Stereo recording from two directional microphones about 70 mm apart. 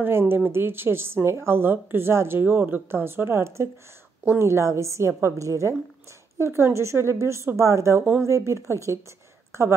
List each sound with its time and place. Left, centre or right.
0.0 s a woman's voice: right